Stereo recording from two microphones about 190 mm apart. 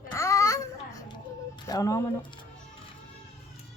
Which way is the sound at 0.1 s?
15° left (ahead or behind).